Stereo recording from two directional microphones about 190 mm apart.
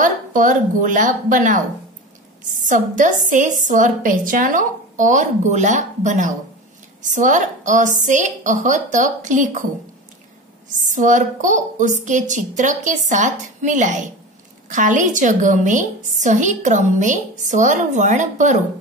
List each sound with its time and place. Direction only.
0.0 s a woman's voice: 45° right (ahead or behind)
2.6 s a woman's voice: 40° right (ahead or behind)
10.8 s a woman's voice: 40° right (ahead or behind)